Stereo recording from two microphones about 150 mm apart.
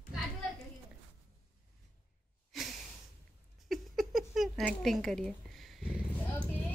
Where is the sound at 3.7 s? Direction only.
Centre (ahead or behind).